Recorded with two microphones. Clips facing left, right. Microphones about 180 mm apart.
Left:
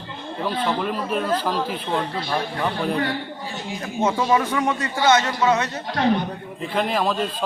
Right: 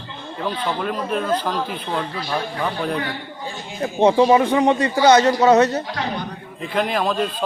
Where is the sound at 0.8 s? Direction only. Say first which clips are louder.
Right 1 dB; 5° left (ahead or behind).